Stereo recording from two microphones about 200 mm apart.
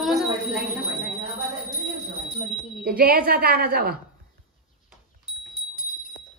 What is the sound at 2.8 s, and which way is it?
A woman's voice, 50° right (ahead or behind).